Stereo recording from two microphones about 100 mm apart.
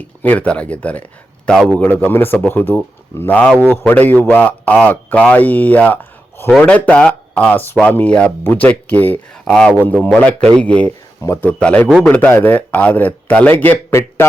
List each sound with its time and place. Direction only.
0.0 s a man's voice: 15° left (ahead or behind)
11.2 s speech: 25° left (ahead or behind)
11.6 s a man's voice: 15° left (ahead or behind)